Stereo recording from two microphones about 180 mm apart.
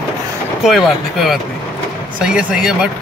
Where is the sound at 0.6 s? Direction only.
Centre (ahead or behind).